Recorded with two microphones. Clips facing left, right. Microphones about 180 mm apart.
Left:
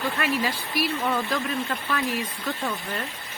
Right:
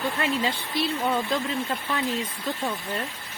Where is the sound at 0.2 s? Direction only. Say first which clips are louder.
Even; 25° right (ahead or behind).